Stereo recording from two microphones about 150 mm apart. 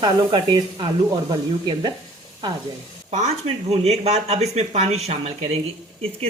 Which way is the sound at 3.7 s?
45° right (ahead or behind).